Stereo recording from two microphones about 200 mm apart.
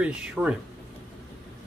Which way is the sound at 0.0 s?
5° right (ahead or behind).